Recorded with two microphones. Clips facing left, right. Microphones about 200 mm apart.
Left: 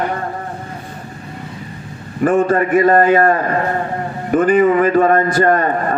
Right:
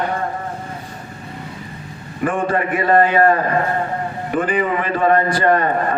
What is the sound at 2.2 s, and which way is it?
A man's voice, 40° left (ahead or behind).